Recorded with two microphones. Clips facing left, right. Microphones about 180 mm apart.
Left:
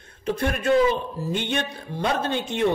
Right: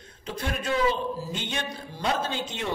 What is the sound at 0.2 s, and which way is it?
Speech, 55° left (ahead or behind).